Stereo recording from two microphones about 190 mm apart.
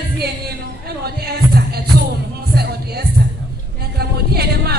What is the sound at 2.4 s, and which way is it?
Music, 60° right (ahead or behind).